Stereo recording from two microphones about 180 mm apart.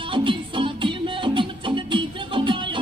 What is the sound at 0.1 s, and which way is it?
Music, 30° right (ahead or behind).